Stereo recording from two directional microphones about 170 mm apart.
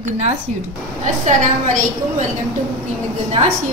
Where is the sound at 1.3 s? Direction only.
45° right (ahead or behind).